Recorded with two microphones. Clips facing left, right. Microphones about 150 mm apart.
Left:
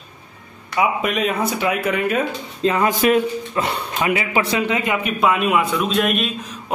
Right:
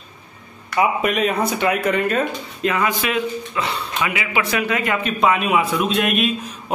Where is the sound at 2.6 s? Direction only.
35° left (ahead or behind); by 5.1 s 15° left (ahead or behind).